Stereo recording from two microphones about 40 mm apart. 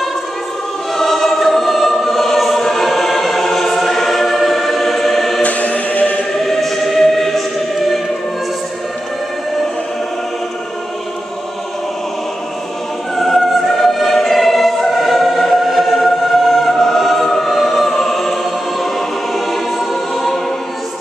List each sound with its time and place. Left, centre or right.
0.9 s choir: centre
5.4 s music: left
6.3 s choir: centre
13.1 s choir: centre